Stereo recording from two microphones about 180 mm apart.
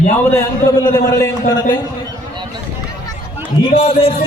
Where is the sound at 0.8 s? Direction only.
20° left (ahead or behind).